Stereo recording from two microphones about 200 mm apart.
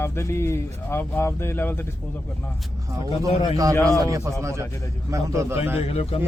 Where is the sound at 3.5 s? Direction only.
15° right (ahead or behind).